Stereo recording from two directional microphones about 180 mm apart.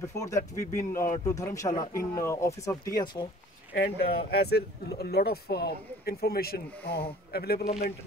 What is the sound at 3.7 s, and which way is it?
Speech, 60° left (ahead or behind).